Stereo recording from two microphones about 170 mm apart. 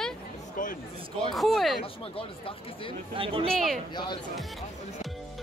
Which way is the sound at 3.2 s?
30° right (ahead or behind).